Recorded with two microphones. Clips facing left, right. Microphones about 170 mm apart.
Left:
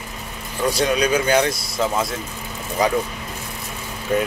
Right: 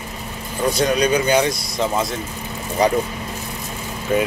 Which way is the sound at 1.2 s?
5° right (ahead or behind).